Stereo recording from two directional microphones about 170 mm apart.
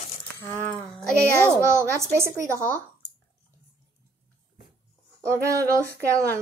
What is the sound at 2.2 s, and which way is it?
Speech, 15° right (ahead or behind).